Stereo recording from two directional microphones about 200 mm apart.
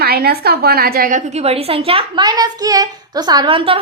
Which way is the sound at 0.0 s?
50° right (ahead or behind).